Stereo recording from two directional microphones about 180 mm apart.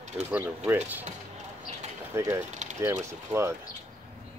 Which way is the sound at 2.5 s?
40° right (ahead or behind).